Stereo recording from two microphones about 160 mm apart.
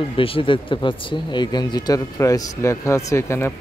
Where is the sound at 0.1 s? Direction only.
35° left (ahead or behind).